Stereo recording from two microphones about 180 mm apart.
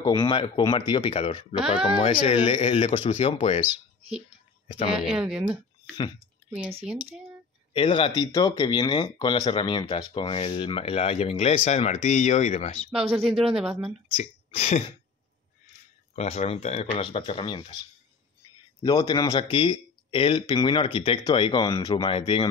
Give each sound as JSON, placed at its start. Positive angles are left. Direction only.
{"t": 0.0, "sound": "speech", "side_deg": 20}
{"t": 4.9, "sound": "speech", "side_deg": -5}
{"t": 6.7, "sound": "speech", "side_deg": -35}
{"t": 7.7, "sound": "speech", "side_deg": 30}
{"t": 13.0, "sound": "speech", "side_deg": -30}
{"t": 13.6, "sound": "speech", "side_deg": -5}
{"t": 14.1, "sound": "speech", "side_deg": 35}
{"t": 16.2, "sound": "speech", "side_deg": 35}
{"t": 18.8, "sound": "speech", "side_deg": 20}
{"t": 22.1, "sound": "speech", "side_deg": 30}